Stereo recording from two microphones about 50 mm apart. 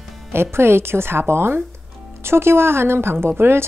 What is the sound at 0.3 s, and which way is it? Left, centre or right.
A woman's voice, right.